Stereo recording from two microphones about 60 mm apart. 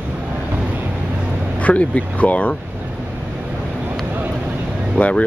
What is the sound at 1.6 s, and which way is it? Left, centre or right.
Speech, left.